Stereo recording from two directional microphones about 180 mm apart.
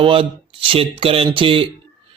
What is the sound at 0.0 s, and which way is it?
Speech, 30° right (ahead or behind).